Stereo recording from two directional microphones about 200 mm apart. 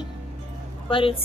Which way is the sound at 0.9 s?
25° left (ahead or behind).